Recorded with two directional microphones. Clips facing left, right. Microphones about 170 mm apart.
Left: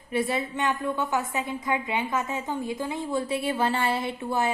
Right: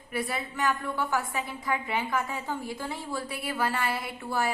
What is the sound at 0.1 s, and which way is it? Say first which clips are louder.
A woman's voice: left 6 dB; 25° left (ahead or behind).